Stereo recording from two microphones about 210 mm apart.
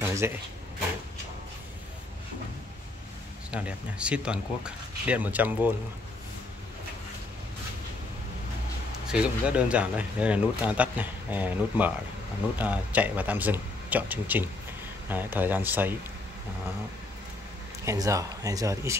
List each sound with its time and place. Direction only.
0.0 s speech: 10° right (ahead or behind)
3.5 s speech: 5° right (ahead or behind)
9.0 s speech: 5° right (ahead or behind)
17.8 s speech: 15° right (ahead or behind)